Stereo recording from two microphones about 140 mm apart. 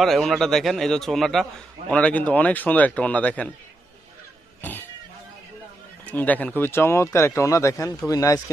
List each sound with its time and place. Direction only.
0.0 s a man's voice: centre (ahead or behind)
4.6 s a sound: 15° left (ahead or behind)
6.0 s speech: 10° left (ahead or behind)